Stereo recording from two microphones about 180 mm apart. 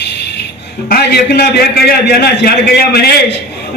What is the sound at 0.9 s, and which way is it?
A man's voice, 65° left (ahead or behind).